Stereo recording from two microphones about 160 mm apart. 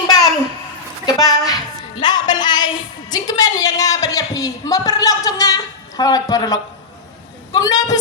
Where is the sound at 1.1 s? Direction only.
25° left (ahead or behind).